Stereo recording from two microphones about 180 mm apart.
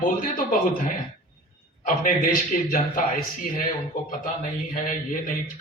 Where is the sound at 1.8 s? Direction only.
50° left (ahead or behind).